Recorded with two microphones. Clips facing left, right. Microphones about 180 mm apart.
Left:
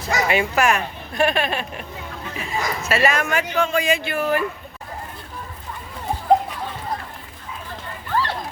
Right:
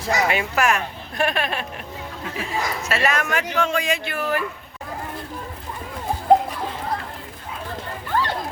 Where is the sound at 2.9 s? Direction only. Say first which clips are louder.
Left 3 dB; centre (ahead or behind).